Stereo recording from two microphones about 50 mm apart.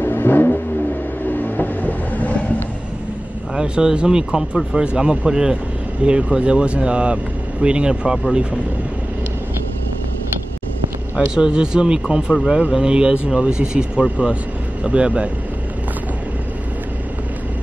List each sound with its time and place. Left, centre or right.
0.0 s vehicle: left
3.5 s speech: centre
11.1 s speech: centre